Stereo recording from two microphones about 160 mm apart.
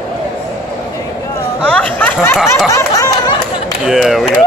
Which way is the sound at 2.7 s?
20° left (ahead or behind).